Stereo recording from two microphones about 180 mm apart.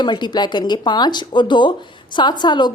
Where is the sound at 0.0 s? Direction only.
25° left (ahead or behind).